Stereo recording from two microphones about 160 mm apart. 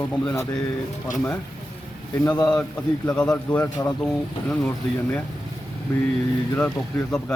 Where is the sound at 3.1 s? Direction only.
5° left (ahead or behind).